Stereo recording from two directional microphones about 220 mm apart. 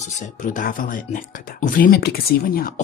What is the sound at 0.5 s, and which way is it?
Speech, 35° left (ahead or behind).